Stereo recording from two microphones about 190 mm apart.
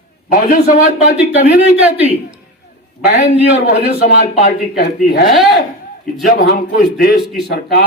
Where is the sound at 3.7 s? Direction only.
50° left (ahead or behind).